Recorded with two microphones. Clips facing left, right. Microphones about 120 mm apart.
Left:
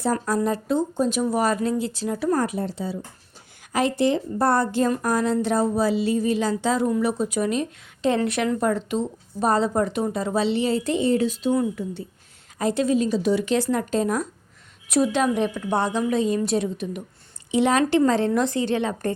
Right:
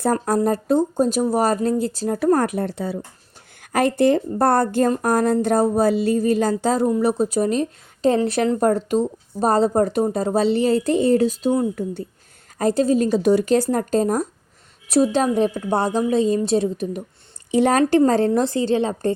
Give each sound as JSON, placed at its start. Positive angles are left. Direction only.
{"t": 0.0, "sound": "speech", "side_deg": -50}
{"t": 6.8, "sound": "a woman's voice", "side_deg": -30}
{"t": 13.0, "sound": "a woman's voice", "side_deg": -55}